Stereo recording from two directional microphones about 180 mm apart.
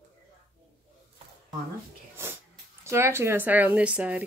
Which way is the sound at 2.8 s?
15° right (ahead or behind).